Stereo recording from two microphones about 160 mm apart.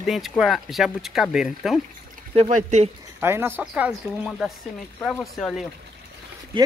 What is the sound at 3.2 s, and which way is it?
Speech, 15° right (ahead or behind).